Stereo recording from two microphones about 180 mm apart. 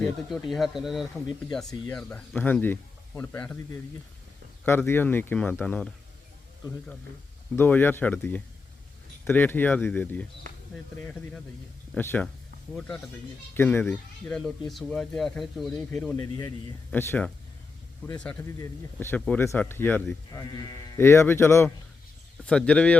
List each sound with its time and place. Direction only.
0.0 s speech: centre (ahead or behind)
4.6 s speech: 15° left (ahead or behind)
7.5 s speech: 10° left (ahead or behind)
13.5 s speech: 10° left (ahead or behind)